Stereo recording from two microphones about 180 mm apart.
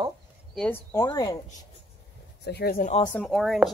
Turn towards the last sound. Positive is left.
turn(degrees=0)  # may be behind; listen again after turning